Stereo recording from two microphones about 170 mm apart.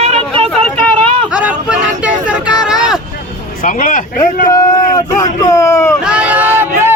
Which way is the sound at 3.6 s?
50° left (ahead or behind).